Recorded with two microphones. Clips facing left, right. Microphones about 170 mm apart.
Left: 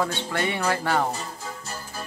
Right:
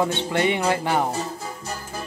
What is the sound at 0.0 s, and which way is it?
Music, 20° right (ahead or behind).